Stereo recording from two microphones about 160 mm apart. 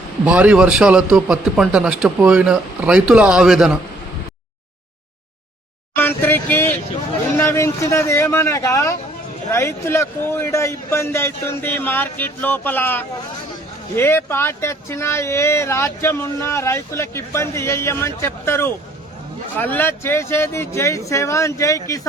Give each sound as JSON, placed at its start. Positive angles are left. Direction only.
{"t": 0.3, "sound": "a man's voice", "side_deg": -5}
{"t": 6.0, "sound": "speech", "side_deg": 10}